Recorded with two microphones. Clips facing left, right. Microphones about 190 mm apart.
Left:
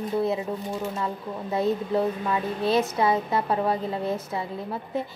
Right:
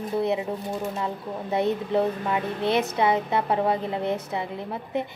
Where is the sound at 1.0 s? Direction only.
20° right (ahead or behind).